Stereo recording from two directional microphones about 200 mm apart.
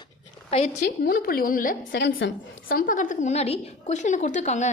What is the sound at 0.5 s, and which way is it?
Speech, 30° left (ahead or behind).